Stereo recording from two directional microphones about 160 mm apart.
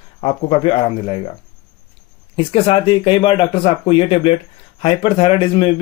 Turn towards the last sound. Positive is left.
turn(degrees=35)  # may be behind; listen again after turning